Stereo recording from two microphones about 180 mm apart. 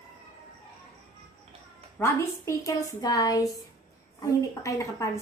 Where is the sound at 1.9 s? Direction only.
15° left (ahead or behind).